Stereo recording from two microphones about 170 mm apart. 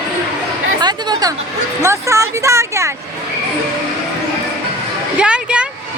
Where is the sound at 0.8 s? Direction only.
25° right (ahead or behind).